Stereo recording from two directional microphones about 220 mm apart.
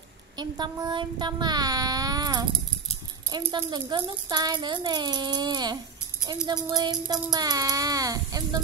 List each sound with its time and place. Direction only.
0.4 s child singing: 20° right (ahead or behind)
3.3 s speech: 20° right (ahead or behind)
6.4 s child singing: 20° right (ahead or behind)